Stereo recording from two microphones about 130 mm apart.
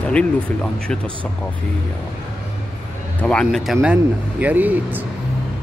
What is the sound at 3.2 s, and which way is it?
Speech, 10° left (ahead or behind).